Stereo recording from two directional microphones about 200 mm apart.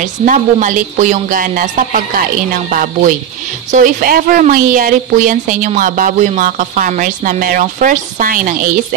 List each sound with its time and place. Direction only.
0.0 s a woman's voice: 40° right (ahead or behind)